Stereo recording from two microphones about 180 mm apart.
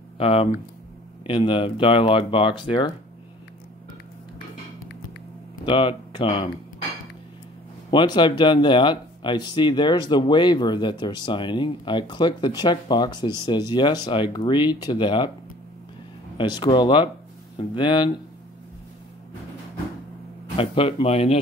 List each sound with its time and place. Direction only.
0.2 s speech: 30° left (ahead or behind)
5.7 s speech: 30° left (ahead or behind)
7.9 s speech: 25° left (ahead or behind)
16.3 s speech: 25° left (ahead or behind)
20.5 s speech: 30° left (ahead or behind)